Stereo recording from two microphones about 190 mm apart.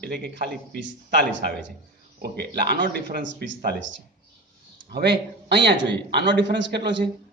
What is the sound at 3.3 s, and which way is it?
Speech, 75° right (ahead or behind).